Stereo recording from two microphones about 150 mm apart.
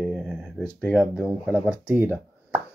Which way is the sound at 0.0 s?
Centre (ahead or behind).